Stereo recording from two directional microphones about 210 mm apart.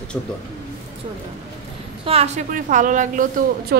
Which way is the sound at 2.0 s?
30° right (ahead or behind).